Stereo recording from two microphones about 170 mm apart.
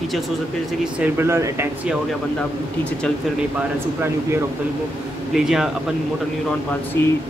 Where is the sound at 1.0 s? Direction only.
15° right (ahead or behind).